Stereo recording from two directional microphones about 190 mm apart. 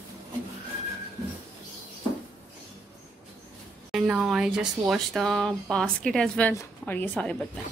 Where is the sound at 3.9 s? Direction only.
5° right (ahead or behind).